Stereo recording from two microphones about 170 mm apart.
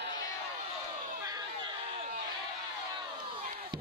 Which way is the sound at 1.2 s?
20° right (ahead or behind).